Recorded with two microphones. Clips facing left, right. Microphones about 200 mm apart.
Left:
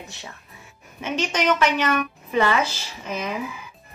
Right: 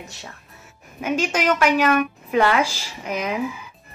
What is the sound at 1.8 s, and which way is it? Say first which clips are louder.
Speech: right 4 dB; 55° right (ahead or behind).